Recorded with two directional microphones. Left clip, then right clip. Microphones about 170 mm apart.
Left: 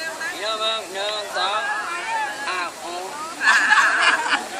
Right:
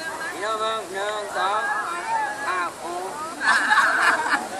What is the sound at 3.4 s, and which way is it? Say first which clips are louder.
Snicker: left 3 dB; 5° right (ahead or behind).